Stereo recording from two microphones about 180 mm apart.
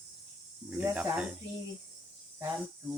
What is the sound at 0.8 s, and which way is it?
Speech, 10° right (ahead or behind).